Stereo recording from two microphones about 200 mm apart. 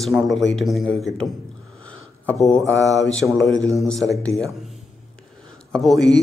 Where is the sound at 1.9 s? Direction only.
5° left (ahead or behind).